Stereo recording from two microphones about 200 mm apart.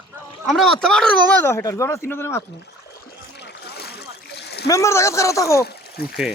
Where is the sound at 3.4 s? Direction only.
55° left (ahead or behind).